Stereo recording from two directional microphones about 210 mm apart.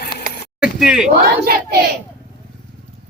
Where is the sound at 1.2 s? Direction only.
45° right (ahead or behind).